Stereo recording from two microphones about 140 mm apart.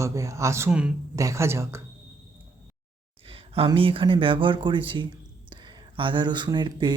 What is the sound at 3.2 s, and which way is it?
Speech, 40° right (ahead or behind).